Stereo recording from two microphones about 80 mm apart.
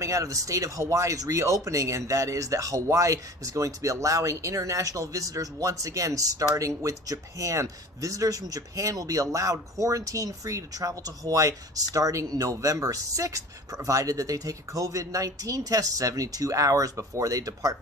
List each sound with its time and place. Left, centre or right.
0.0 s speech: right